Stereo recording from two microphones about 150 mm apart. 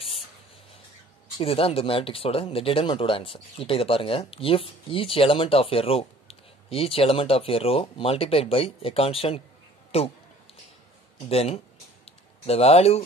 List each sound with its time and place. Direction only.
1.4 s speech: 40° left (ahead or behind)
11.2 s speech: 45° left (ahead or behind)